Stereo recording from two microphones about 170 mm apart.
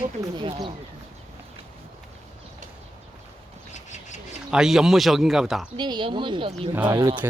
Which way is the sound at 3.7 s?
45° left (ahead or behind).